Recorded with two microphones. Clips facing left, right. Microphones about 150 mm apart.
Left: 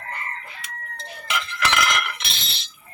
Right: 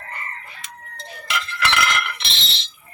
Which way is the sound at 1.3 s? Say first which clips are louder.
Right 1 dB; 15° left (ahead or behind).